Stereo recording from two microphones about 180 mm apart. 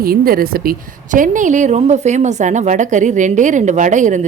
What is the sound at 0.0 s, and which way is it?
A woman's voice, 55° right (ahead or behind).